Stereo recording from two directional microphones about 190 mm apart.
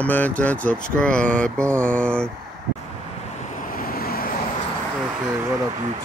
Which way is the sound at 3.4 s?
45° left (ahead or behind).